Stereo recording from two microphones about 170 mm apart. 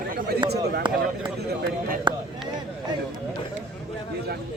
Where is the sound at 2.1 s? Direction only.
25° right (ahead or behind).